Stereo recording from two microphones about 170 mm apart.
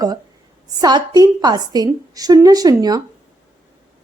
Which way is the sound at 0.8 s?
25° right (ahead or behind).